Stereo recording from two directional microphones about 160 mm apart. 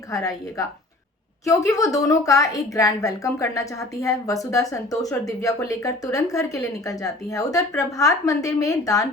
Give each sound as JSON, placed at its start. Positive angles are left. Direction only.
{"t": 0.1, "sound": "a woman's voice", "side_deg": 20}